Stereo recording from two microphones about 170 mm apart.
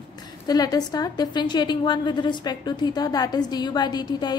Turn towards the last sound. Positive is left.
turn(degrees=25)  # may be behind; listen again after turning